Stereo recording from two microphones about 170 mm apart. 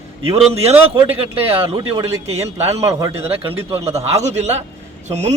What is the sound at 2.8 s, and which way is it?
Speech, 20° right (ahead or behind).